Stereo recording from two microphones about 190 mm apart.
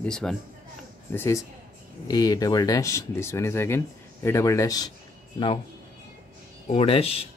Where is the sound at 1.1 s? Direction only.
15° left (ahead or behind).